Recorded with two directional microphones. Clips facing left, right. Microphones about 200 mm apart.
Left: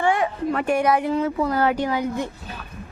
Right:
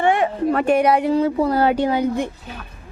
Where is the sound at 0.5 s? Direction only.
30° right (ahead or behind).